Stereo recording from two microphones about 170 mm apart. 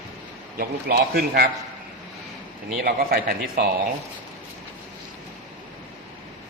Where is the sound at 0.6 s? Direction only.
65° right (ahead or behind).